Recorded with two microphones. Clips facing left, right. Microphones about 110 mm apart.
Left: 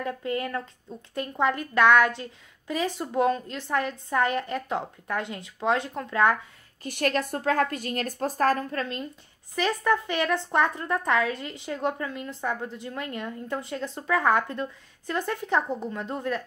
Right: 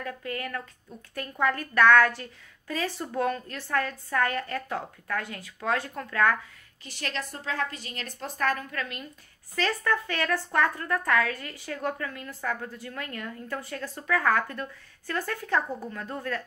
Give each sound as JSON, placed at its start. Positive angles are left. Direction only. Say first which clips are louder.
{"t": 0.0, "sound": "speech", "louder": "left 5 dB", "side_deg": 20}
{"t": 6.8, "sound": "a woman's voice", "louder": "left 9 dB", "side_deg": 50}
{"t": 9.6, "sound": "speech", "louder": "left 3 dB", "side_deg": 15}